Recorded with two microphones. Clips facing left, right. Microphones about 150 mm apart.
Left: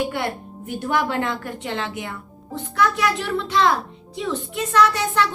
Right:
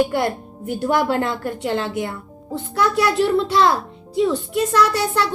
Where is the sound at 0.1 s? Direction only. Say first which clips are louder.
Right 5 dB; 35° right (ahead or behind).